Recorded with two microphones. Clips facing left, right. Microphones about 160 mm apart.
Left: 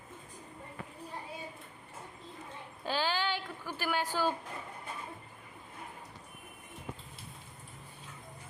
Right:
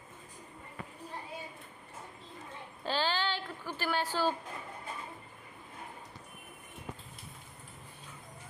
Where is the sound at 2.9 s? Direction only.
10° left (ahead or behind).